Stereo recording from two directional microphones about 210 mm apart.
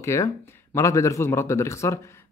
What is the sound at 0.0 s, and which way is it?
Speech, 15° left (ahead or behind).